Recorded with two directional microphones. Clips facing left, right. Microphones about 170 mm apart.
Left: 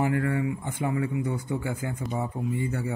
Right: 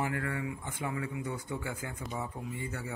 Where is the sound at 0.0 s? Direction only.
30° left (ahead or behind).